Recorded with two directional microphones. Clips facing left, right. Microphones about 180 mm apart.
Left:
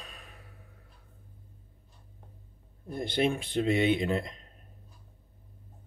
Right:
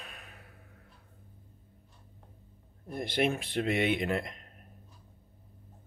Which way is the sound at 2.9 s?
30° left (ahead or behind).